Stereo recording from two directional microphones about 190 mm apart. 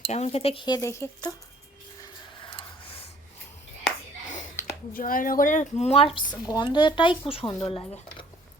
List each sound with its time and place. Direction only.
0.1 s speech: 35° left (ahead or behind); by 1.3 s 15° left (ahead or behind)
2.5 s a sound: 25° left (ahead or behind)
4.9 s a woman's voice: 50° left (ahead or behind); by 8.3 s 25° left (ahead or behind)